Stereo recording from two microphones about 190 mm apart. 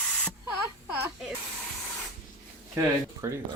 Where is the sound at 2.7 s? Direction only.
15° right (ahead or behind).